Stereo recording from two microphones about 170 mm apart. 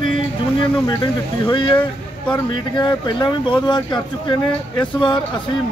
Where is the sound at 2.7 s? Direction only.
25° left (ahead or behind).